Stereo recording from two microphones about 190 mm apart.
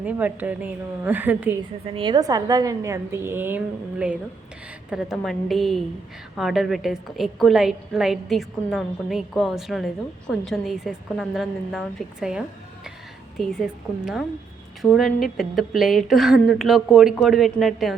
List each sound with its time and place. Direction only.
0.0 s a woman's voice: 10° right (ahead or behind)
1.9 s a woman's voice: 25° right (ahead or behind); by 17.9 s centre (ahead or behind)